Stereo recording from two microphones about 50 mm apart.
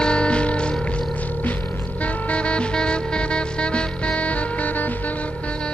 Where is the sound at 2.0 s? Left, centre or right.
Left.